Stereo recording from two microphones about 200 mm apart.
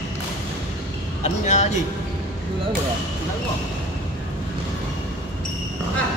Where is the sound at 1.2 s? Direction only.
35° left (ahead or behind).